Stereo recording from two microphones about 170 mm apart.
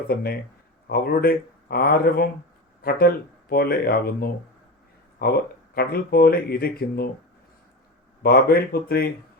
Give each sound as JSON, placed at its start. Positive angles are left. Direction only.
{"t": 0.1, "sound": "speech", "side_deg": 65}
{"t": 3.5, "sound": "speech", "side_deg": 65}
{"t": 8.2, "sound": "speech", "side_deg": 65}